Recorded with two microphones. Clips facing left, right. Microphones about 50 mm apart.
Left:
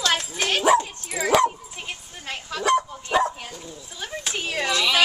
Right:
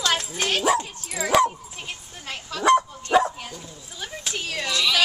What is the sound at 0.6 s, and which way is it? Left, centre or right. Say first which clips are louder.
Dog: left 5 dB; centre.